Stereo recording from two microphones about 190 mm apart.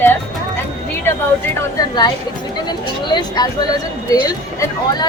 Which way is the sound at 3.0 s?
20° left (ahead or behind).